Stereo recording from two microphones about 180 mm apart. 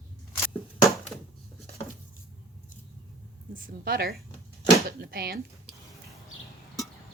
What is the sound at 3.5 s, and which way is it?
Speech, 55° right (ahead or behind).